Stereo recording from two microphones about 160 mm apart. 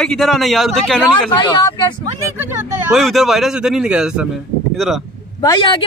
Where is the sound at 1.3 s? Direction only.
25° left (ahead or behind).